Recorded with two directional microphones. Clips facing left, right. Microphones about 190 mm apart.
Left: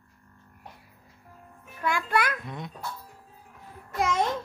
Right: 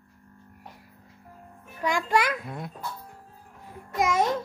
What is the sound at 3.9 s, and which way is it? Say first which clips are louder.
Babbling: right 2 dB; 10° right (ahead or behind).